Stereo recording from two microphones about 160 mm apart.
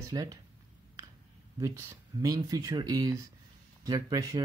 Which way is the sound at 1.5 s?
20° right (ahead or behind).